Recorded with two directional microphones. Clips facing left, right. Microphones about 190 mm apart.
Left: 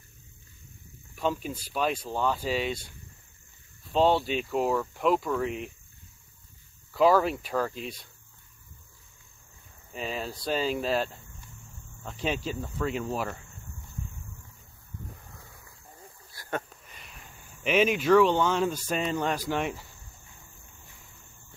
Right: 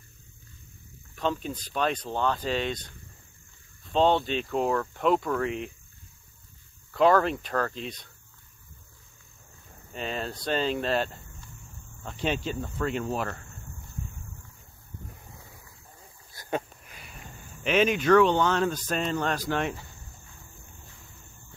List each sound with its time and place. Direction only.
1.1 s speech: 5° left (ahead or behind)
3.9 s speech: 5° left (ahead or behind)
6.9 s speech: 5° left (ahead or behind)
9.9 s speech: 5° left (ahead or behind)
16.3 s a sound: 20° right (ahead or behind)
16.9 s sniff: 5° right (ahead or behind)
17.6 s speech: 5° left (ahead or behind)